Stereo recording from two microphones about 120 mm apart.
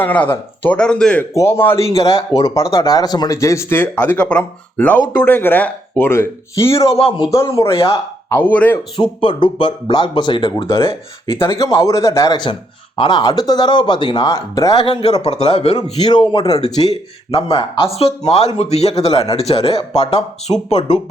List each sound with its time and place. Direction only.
0.0 s speech: 15° left (ahead or behind)
1.2 s speech: 25° left (ahead or behind)
1.9 s speech: 55° left (ahead or behind)
2.1 s speech: 30° left (ahead or behind)
7.6 s speech: 50° left (ahead or behind)
8.3 s speech: 15° left (ahead or behind)
9.0 s speech: 45° left (ahead or behind)
11.6 s speech: 30° left (ahead or behind)
14.8 s speech: 55° left (ahead or behind)
16.0 s speech: 40° left (ahead or behind)
16.9 s speech: 55° left (ahead or behind)
20.5 s speech: 45° left (ahead or behind)